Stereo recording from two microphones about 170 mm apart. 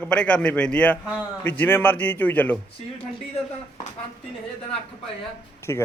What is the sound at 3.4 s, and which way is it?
Speech, 35° left (ahead or behind).